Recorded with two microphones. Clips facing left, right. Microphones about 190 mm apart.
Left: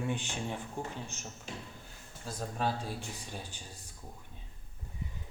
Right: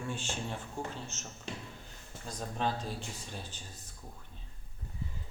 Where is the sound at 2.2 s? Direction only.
5° left (ahead or behind).